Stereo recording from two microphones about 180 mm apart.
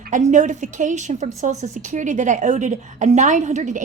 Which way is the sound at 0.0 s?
45° right (ahead or behind).